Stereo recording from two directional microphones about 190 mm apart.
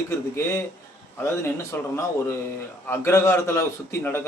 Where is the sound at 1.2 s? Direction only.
15° left (ahead or behind).